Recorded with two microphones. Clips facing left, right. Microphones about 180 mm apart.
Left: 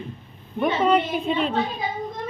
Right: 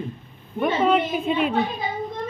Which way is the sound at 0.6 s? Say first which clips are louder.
Even; centre (ahead or behind).